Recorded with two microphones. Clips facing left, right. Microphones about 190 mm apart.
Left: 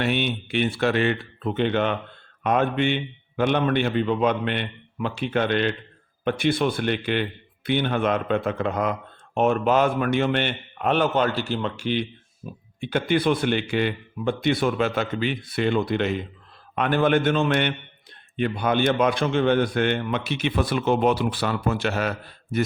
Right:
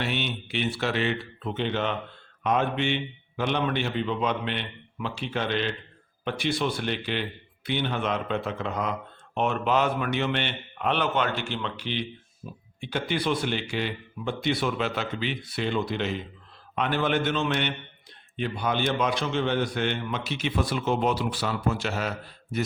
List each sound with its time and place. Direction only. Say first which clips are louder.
0.0 s speech: left 6 dB; 55° left (ahead or behind)